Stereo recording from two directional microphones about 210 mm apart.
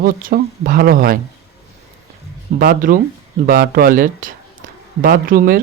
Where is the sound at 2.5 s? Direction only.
40° right (ahead or behind).